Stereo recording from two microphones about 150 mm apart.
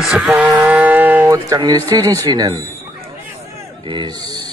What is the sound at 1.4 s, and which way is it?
Speech, 25° right (ahead or behind).